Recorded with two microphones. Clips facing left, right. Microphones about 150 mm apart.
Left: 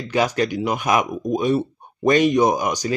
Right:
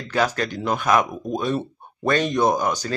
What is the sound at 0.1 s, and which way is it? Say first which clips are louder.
Speech: left 2 dB; 15° left (ahead or behind).